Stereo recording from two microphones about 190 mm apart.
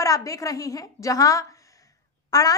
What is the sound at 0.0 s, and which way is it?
Speech, 15° left (ahead or behind).